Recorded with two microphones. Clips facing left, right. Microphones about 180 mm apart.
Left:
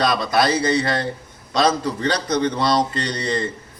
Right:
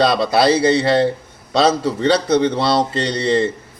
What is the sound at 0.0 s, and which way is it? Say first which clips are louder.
A man's voice: right 4 dB; 30° right (ahead or behind).